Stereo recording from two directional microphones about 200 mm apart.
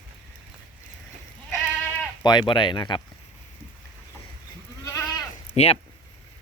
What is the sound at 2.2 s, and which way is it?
Speech, 20° left (ahead or behind).